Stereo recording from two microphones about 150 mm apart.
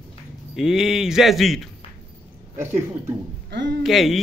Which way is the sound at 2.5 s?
15° right (ahead or behind).